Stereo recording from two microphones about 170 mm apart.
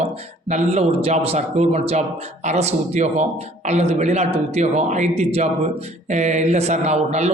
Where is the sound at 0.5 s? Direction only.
40° right (ahead or behind).